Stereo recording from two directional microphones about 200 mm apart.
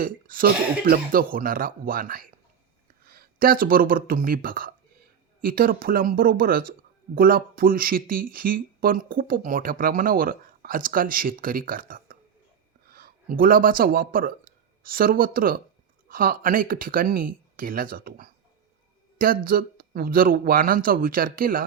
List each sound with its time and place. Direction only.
0.0 s speech: 45° right (ahead or behind)